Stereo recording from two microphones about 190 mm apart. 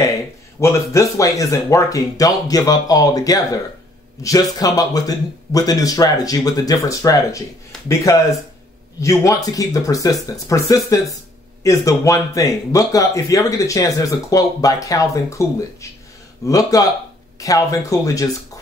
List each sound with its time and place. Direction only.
0.6 s speech: 15° left (ahead or behind)